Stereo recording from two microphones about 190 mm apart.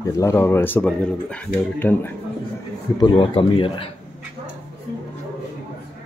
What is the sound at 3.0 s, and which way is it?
Speech, 25° left (ahead or behind).